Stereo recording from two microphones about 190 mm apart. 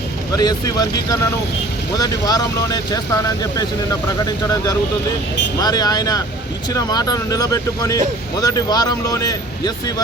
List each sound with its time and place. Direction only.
0.3 s speech: 20° left (ahead or behind)
5.5 s speech: 20° left (ahead or behind)